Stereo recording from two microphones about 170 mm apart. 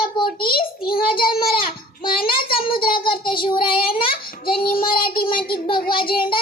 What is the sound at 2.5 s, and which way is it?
Child singing, 30° left (ahead or behind).